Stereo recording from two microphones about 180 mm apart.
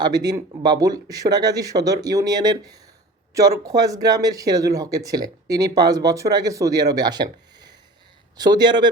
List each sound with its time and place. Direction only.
0.0 s speech: 20° right (ahead or behind)